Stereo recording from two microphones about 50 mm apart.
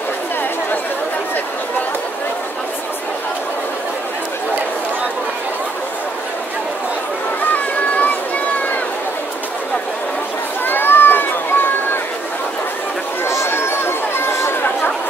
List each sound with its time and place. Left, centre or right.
7.5 s a sound: left
10.6 s run: left
13.2 s chatter: left